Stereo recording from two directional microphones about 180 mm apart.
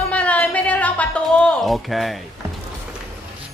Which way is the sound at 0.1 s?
5° left (ahead or behind).